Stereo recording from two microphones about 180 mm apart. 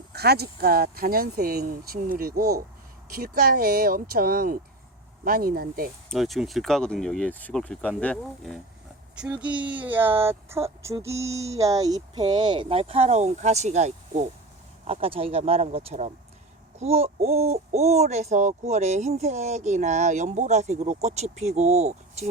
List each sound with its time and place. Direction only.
0.1 s speech: 60° right (ahead or behind)
6.1 s speech: centre (ahead or behind); by 22.3 s 35° right (ahead or behind)